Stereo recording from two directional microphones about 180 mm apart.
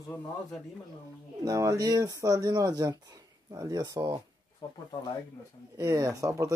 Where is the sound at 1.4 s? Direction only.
20° right (ahead or behind).